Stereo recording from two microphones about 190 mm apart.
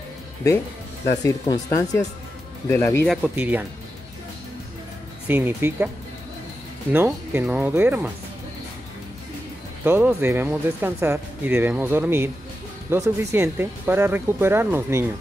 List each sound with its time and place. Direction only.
1.2 s speech: 15° left (ahead or behind)
3.1 s speech: 10° right (ahead or behind)
5.3 s speech: 10° right (ahead or behind)
6.9 s speech: 10° right (ahead or behind)
9.8 s speech: 10° right (ahead or behind)